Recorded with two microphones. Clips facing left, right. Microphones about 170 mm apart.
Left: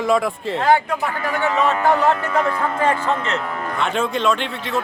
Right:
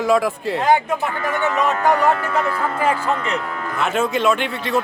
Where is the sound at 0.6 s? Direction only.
20° right (ahead or behind).